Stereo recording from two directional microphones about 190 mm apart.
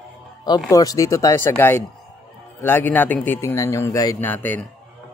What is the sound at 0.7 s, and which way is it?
Speech, 15° left (ahead or behind).